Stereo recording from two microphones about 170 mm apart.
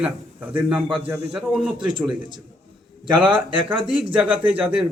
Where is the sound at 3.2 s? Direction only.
30° right (ahead or behind).